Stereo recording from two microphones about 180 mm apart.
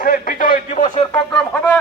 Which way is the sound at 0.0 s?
50° left (ahead or behind).